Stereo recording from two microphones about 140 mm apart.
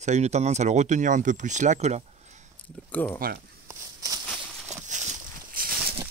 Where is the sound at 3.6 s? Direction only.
25° right (ahead or behind).